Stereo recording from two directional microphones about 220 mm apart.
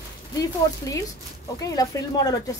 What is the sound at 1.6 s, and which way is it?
Speech, 15° left (ahead or behind).